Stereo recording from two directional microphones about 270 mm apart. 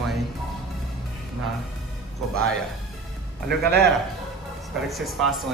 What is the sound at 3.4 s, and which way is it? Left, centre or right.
Speech, right.